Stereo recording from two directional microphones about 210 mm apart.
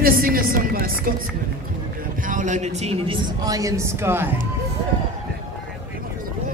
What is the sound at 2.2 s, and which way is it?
Speech, 40° right (ahead or behind).